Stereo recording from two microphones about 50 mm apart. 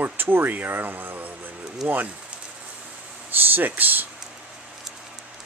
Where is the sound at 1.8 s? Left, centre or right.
Right.